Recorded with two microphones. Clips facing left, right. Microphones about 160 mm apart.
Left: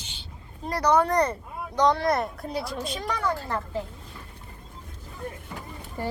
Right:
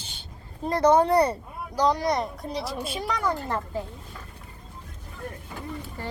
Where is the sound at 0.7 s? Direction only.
25° right (ahead or behind).